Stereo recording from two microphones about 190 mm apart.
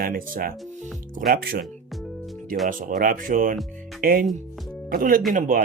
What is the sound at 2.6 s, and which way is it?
Speech, 45° right (ahead or behind).